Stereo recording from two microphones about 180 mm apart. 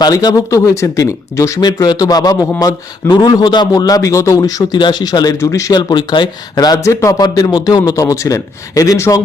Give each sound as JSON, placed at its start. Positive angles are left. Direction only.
{"t": 0.0, "sound": "speech", "side_deg": 20}